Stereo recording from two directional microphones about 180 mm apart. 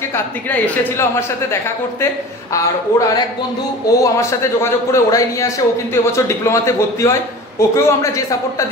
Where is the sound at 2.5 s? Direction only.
20° left (ahead or behind).